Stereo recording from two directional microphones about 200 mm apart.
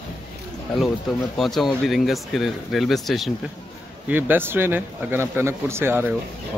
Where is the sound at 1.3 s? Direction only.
Centre (ahead or behind).